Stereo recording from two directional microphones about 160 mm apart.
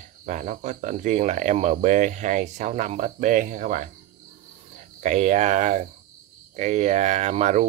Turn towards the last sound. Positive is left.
turn(degrees=-45)  # may be behind; listen again after turning